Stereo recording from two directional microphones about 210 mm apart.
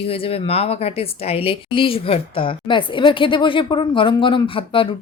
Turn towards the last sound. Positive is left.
turn(degrees=25)  # may be behind; listen again after turning